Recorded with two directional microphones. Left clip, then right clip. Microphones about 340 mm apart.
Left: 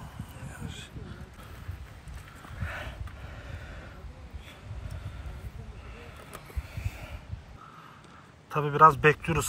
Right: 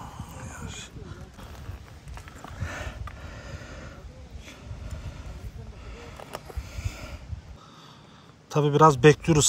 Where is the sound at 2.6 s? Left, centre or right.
Right.